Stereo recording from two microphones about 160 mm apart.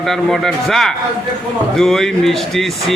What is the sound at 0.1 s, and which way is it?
A man's voice, 5° left (ahead or behind).